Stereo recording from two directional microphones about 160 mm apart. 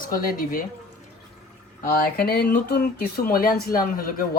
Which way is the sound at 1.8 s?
70° left (ahead or behind).